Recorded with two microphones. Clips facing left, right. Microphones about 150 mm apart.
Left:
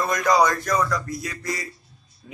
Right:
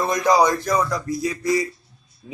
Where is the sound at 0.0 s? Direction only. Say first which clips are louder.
Right 2 dB; 25° right (ahead or behind).